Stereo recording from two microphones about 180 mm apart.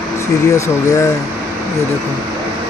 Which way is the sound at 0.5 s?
15° left (ahead or behind).